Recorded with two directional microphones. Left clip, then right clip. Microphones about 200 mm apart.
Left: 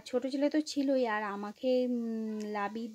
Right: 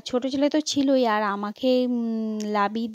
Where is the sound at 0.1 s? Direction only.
40° right (ahead or behind).